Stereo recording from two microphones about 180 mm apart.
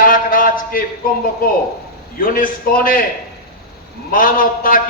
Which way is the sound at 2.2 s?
50° left (ahead or behind).